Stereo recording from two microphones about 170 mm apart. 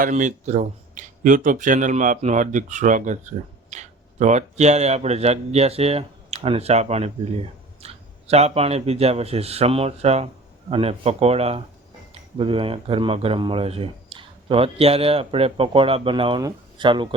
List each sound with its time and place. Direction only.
0.0 s speech: 50° right (ahead or behind); by 17.1 s 30° right (ahead or behind)